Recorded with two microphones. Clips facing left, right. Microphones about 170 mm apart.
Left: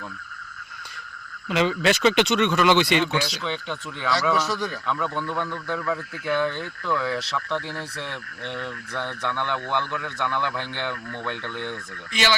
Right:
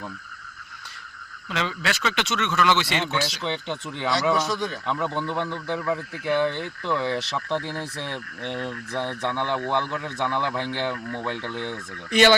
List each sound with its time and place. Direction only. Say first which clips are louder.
1.5 s speech: left 7 dB; 15° left (ahead or behind)
3.4 s speech: right 1 dB; 25° right (ahead or behind)